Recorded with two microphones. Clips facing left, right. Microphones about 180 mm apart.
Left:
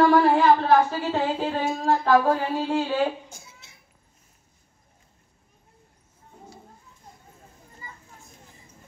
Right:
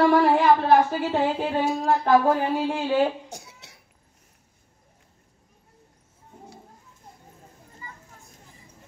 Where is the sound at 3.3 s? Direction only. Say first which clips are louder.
Right 7 dB; 70° right (ahead or behind).